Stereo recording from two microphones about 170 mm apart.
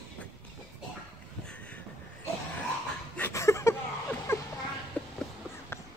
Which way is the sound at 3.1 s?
15° left (ahead or behind).